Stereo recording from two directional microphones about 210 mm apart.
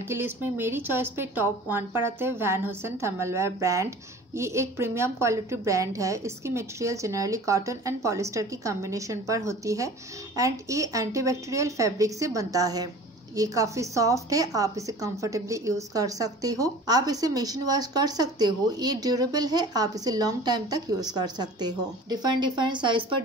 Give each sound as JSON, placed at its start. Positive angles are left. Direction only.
{"t": 0.1, "sound": "a woman's voice", "side_deg": -10}